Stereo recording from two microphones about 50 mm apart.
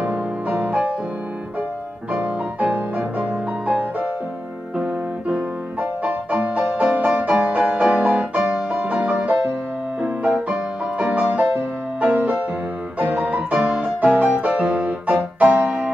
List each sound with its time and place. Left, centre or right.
0.0 s music: right
2.1 s music: right
5.3 s music: right
11.3 s music: right